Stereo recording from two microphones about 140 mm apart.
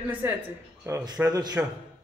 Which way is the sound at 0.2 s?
15° right (ahead or behind).